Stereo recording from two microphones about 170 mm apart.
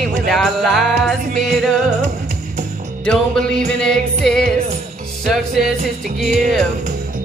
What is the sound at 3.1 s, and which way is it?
Music, 5° left (ahead or behind).